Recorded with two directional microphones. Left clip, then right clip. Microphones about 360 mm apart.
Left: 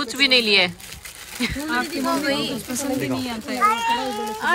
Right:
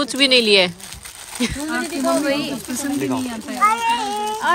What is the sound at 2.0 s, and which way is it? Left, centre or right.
Speech, centre.